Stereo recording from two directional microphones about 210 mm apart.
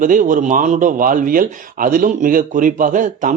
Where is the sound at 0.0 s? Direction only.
40° right (ahead or behind).